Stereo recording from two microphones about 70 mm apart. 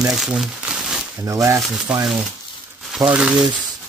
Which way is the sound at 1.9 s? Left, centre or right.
Centre.